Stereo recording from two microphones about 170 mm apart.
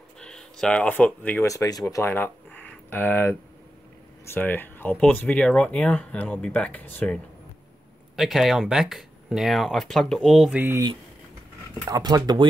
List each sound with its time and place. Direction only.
0.2 s speech: 5° left (ahead or behind)
8.2 s speech: centre (ahead or behind)
11.8 s speech: 25° right (ahead or behind)